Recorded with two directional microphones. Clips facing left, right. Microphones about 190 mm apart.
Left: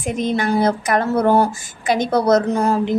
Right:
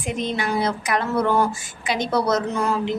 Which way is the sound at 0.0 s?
45° left (ahead or behind).